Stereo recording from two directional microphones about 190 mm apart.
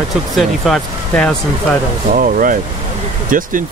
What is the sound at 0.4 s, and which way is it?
Speech, centre (ahead or behind).